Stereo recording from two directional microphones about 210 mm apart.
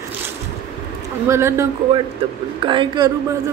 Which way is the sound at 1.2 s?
15° right (ahead or behind).